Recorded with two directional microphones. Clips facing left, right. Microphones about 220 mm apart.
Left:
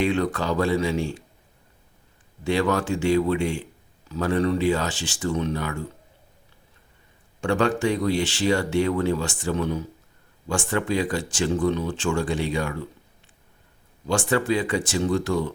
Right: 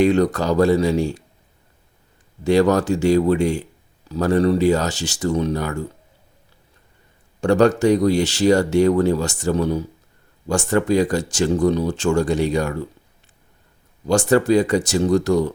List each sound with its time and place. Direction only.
0.0 s speech: 40° right (ahead or behind)
2.4 s speech: 40° right (ahead or behind)
7.4 s speech: 40° right (ahead or behind)
14.1 s speech: 40° right (ahead or behind)